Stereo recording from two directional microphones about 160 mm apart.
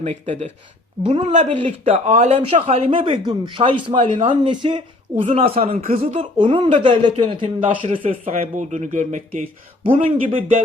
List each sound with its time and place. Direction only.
0.0 s speech: 45° right (ahead or behind); by 4.8 s 30° right (ahead or behind)
5.2 s speech: 45° right (ahead or behind)
6.3 s speech: 30° right (ahead or behind)
8.1 s speech: 55° right (ahead or behind)
9.8 s speech: 35° right (ahead or behind)